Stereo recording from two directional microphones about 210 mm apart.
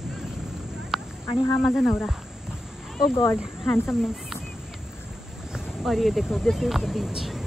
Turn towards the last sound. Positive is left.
turn(degrees=0)  # may be behind; listen again after turning